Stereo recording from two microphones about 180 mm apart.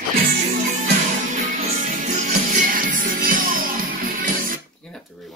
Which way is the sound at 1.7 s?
45° right (ahead or behind).